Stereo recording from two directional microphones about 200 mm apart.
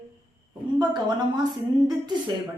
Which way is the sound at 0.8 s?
20° right (ahead or behind).